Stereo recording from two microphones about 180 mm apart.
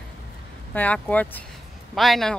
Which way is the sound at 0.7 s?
5° left (ahead or behind).